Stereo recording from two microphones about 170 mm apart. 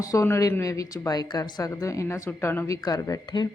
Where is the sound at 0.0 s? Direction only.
20° left (ahead or behind).